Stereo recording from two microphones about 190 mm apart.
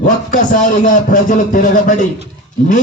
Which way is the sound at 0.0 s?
40° left (ahead or behind).